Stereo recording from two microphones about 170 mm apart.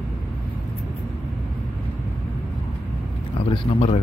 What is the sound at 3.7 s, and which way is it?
Speech, 35° left (ahead or behind).